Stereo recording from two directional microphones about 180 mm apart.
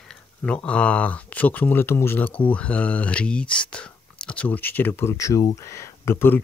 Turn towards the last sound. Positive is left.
turn(degrees=15)  # may be behind; listen again after turning